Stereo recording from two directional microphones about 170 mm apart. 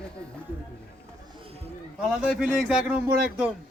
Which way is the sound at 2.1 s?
5° right (ahead or behind).